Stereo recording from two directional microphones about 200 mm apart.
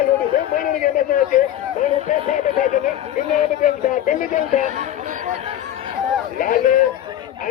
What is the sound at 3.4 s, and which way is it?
Speech, 40° left (ahead or behind).